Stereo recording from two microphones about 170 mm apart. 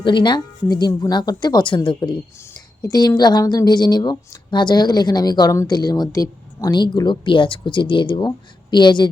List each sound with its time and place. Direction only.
0.0 s speech: 25° left (ahead or behind)